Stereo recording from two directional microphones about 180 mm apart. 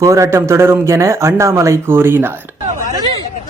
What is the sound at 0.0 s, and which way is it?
Speech, 15° right (ahead or behind).